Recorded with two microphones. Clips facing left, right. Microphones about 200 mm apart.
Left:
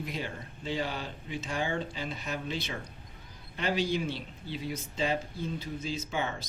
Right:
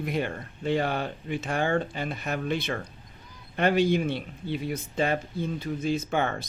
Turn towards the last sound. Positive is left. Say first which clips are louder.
# right 6 dB
turn(degrees=-55)  # may be behind; listen again after turning